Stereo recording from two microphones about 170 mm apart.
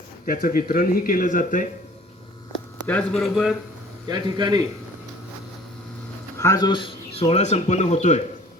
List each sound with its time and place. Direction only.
0.3 s speech: 55° left (ahead or behind)
2.8 s speech: 5° left (ahead or behind)
4.1 s a man's voice: 25° right (ahead or behind)
6.4 s speech: 20° left (ahead or behind); by 8.2 s 40° left (ahead or behind)